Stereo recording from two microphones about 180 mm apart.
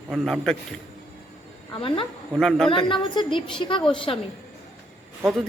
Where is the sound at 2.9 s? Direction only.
25° left (ahead or behind).